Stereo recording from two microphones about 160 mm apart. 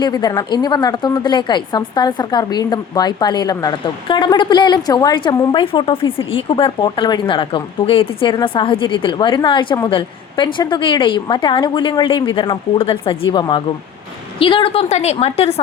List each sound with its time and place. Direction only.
0.0 s a woman's voice: 25° left (ahead or behind); by 15.6 s 40° left (ahead or behind)